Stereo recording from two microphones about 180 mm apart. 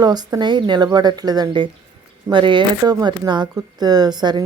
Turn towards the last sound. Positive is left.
turn(degrees=-25)  # may be behind; listen again after turning